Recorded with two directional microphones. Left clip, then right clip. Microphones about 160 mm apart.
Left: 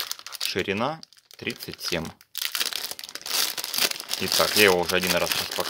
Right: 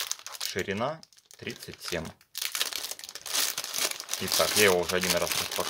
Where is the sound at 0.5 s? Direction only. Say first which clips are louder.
Left 4 dB; 50° left (ahead or behind).